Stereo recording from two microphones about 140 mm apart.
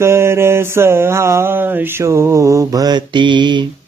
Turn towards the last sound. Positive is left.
turn(degrees=-35)  # may be behind; listen again after turning